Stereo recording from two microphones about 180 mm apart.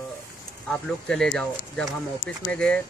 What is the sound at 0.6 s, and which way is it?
Speech, 5° left (ahead or behind).